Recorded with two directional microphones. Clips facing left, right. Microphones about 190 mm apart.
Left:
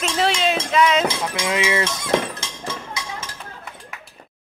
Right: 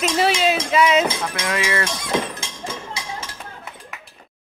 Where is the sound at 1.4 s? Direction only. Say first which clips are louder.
Left 4 dB; 20° left (ahead or behind).